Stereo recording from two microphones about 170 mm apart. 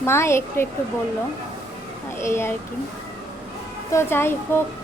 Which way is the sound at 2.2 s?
15° left (ahead or behind).